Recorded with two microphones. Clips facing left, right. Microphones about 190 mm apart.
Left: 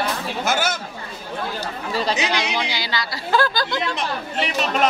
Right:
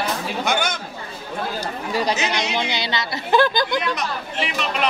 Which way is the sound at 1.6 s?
15° right (ahead or behind).